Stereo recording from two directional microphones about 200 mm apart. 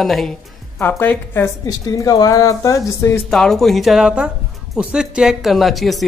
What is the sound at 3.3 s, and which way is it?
Speech, centre (ahead or behind).